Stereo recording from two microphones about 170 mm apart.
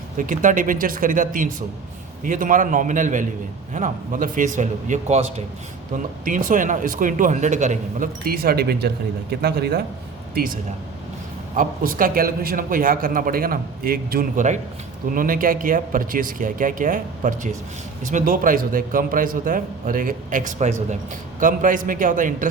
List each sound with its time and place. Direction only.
0.2 s a man's voice: 50° right (ahead or behind)
6.2 s a man's voice: 50° right (ahead or behind); by 9.8 s 65° right (ahead or behind)
10.3 s a man's voice: 55° right (ahead or behind)